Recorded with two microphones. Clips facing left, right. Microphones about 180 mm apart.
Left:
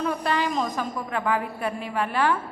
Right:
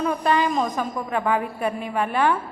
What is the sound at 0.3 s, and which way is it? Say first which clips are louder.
A woman's voice: right 6 dB; 15° right (ahead or behind).